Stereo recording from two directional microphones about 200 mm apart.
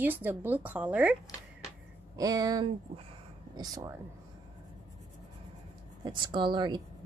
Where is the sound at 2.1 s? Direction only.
20° right (ahead or behind).